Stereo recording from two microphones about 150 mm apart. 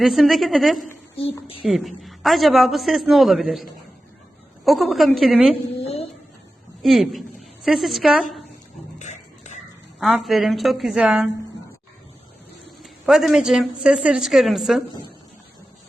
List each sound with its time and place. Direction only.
0.0 s a woman's voice: centre (ahead or behind)
1.1 s speech: 40° left (ahead or behind)
1.6 s a woman's voice: centre (ahead or behind)
5.7 s a sound: 40° left (ahead or behind)
6.8 s a woman's voice: centre (ahead or behind)
9.0 s a sound: 50° left (ahead or behind)
10.0 s a woman's voice: centre (ahead or behind)
12.6 s a man's voice: centre (ahead or behind)